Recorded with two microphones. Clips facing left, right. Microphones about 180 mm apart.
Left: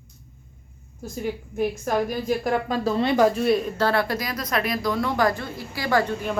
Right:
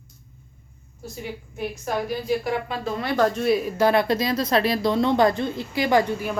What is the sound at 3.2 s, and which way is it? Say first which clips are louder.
Speech: right 1 dB; 5° left (ahead or behind).